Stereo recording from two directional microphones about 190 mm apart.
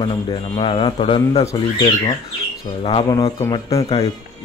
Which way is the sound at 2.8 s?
30° left (ahead or behind).